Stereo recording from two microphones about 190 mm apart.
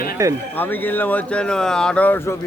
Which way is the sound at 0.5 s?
10° left (ahead or behind).